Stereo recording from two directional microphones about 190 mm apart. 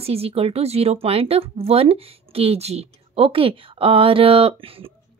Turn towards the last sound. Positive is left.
turn(degrees=-30)  # may be behind; listen again after turning